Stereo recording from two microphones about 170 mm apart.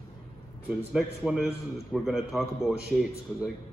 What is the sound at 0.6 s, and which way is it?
A man's voice, 5° right (ahead or behind).